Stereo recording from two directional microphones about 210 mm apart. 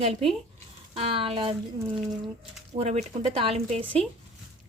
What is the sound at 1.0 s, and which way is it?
Speech, 25° right (ahead or behind).